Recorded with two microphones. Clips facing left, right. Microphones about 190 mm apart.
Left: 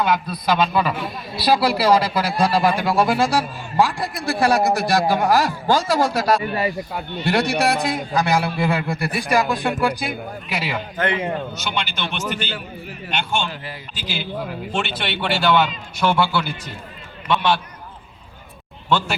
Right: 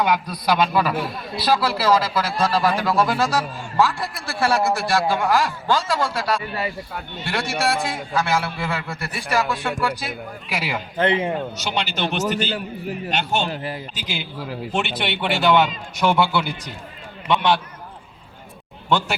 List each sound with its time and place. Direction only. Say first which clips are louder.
0.0 s a man's voice: even; 10° right (ahead or behind)
1.5 s speech: left 3 dB; 15° left (ahead or behind)
4.9 s a man's voice: left 2 dB; 40° left (ahead or behind)
7.4 s speech: left 3 dB; 15° left (ahead or behind)
10.5 s a man's voice: even; 10° right (ahead or behind)
10.9 s a man's voice: right 3 dB; 30° right (ahead or behind)
13.9 s a man's voice: left 3 dB; 15° right (ahead or behind)
17.2 s run: right 1 dB; 15° right (ahead or behind)
18.9 s speech: even; 15° right (ahead or behind)